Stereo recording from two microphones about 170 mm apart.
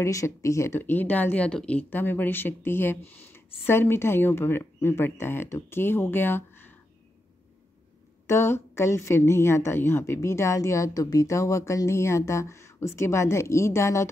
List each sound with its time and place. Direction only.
0.0 s speech: 20° left (ahead or behind)
8.3 s speech: 15° left (ahead or behind)